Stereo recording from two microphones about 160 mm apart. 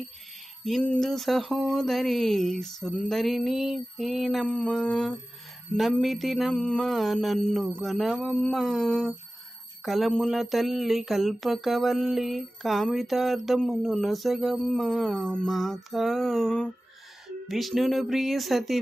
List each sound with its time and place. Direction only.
0.6 s speech: 5° left (ahead or behind)